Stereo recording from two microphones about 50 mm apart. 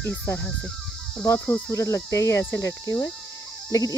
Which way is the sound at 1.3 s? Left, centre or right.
Left.